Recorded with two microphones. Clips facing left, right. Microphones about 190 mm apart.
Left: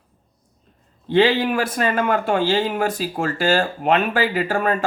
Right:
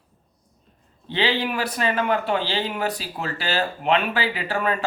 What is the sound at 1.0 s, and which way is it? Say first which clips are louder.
A man's voice: left 7 dB; 50° left (ahead or behind).